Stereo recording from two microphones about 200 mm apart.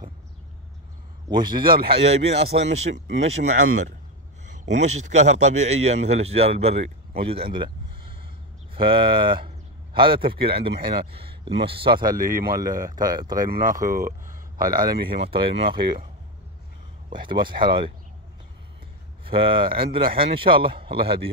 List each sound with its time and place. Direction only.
1.5 s speech: 45° right (ahead or behind)
1.9 s a man's voice: 30° right (ahead or behind)
10.7 s speech: 55° right (ahead or behind)
11.1 s speech: 30° right (ahead or behind)
11.9 s speech: 45° right (ahead or behind)
14.9 s speech: 25° right (ahead or behind)
17.1 s speech: 25° right (ahead or behind)
19.2 s speech: 25° right (ahead or behind)